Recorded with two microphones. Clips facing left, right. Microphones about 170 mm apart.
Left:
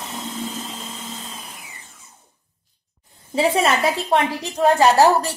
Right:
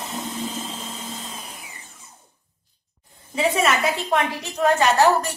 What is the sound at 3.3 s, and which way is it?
A woman's voice, 30° left (ahead or behind).